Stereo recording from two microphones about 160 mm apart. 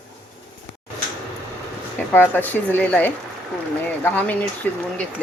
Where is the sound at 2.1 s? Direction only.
10° left (ahead or behind).